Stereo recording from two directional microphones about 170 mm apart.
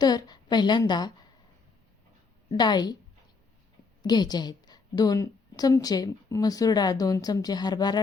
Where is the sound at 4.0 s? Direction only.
25° left (ahead or behind).